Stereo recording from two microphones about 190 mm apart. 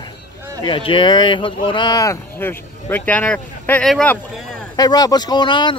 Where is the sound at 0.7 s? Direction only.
25° left (ahead or behind); by 4.2 s 10° left (ahead or behind).